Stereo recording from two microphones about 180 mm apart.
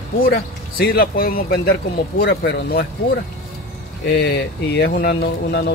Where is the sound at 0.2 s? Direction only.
55° left (ahead or behind).